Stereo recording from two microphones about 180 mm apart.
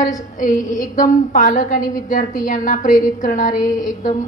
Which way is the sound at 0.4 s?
45° left (ahead or behind).